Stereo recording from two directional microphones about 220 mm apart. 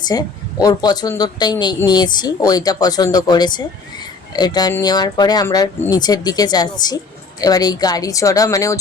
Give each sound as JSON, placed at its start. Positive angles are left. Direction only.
{"t": 0.1, "sound": "speech", "side_deg": 15}